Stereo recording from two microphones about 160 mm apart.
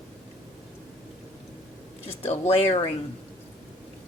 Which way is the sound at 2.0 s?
40° left (ahead or behind).